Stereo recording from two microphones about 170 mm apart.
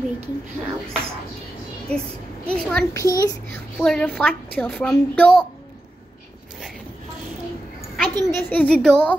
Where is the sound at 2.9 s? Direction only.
20° left (ahead or behind).